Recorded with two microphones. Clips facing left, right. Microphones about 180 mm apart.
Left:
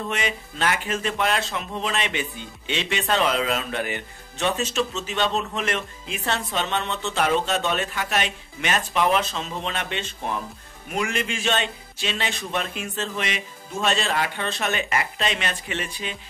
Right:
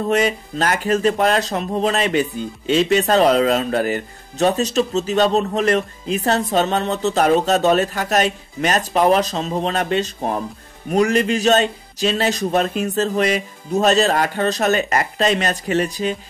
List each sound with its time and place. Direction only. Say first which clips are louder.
0.1 s speech: right 10 dB; 40° right (ahead or behind)